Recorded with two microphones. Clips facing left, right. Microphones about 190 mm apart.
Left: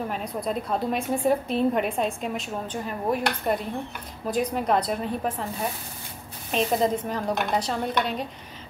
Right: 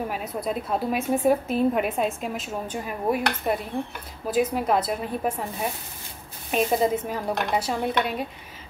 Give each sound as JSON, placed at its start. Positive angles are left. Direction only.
{"t": 0.1, "sound": "a woman's voice", "side_deg": -5}